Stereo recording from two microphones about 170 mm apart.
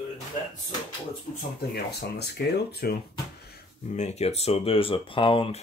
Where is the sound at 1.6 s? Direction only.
75° left (ahead or behind).